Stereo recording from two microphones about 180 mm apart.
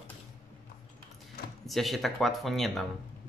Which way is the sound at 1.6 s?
Centre (ahead or behind).